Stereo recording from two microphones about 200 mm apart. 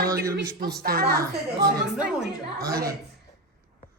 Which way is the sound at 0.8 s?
50° right (ahead or behind).